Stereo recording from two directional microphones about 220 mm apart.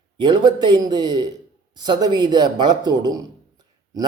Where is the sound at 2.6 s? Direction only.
20° right (ahead or behind).